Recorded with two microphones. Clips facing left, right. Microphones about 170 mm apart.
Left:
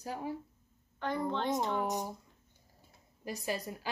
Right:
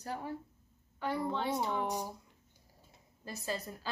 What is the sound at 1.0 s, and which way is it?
Speech, 5° right (ahead or behind).